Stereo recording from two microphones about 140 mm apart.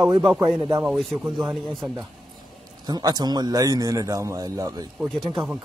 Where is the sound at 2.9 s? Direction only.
30° right (ahead or behind).